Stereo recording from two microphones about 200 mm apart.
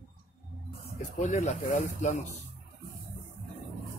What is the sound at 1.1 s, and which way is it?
Speech, 35° left (ahead or behind).